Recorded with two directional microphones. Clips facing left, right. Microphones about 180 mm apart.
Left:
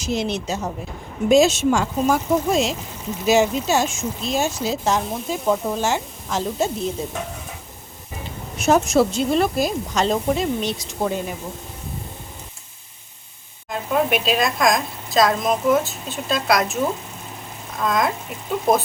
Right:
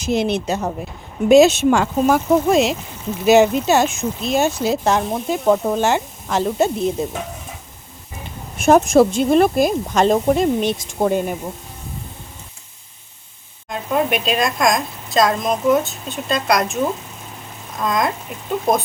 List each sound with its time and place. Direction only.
0.0 s speech: 60° right (ahead or behind)
8.5 s speech: 50° right (ahead or behind)
13.7 s speech: centre (ahead or behind)